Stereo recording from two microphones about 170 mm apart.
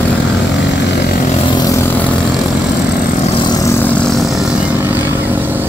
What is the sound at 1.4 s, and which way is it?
Vehicle, 25° left (ahead or behind).